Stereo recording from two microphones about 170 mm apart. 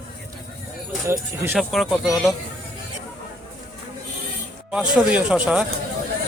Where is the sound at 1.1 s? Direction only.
15° right (ahead or behind).